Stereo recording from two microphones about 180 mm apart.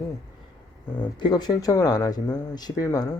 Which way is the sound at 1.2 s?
25° left (ahead or behind).